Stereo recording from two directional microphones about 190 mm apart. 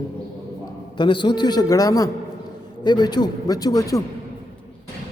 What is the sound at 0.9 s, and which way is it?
A man's voice, 25° left (ahead or behind).